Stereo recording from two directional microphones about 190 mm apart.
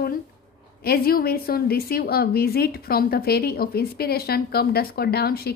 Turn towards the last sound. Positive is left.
turn(degrees=55)  # may be behind; listen again after turning